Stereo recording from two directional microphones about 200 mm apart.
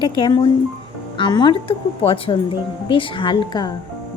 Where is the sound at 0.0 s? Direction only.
20° left (ahead or behind).